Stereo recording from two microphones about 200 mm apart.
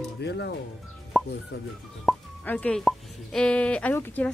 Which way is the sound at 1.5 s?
55° left (ahead or behind).